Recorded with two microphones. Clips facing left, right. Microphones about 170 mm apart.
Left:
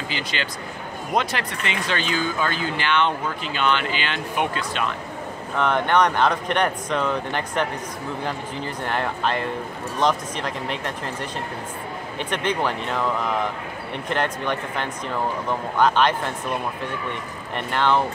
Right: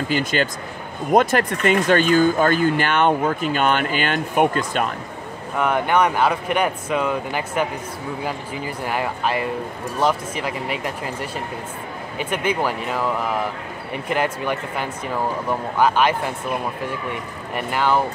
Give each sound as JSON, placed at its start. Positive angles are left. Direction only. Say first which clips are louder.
{"t": 0.1, "sound": "speech", "louder": "right 8 dB", "side_deg": -45}
{"t": 5.6, "sound": "speech", "louder": "right 1 dB", "side_deg": -10}
{"t": 17.6, "sound": "speech", "louder": "right 1 dB", "side_deg": -10}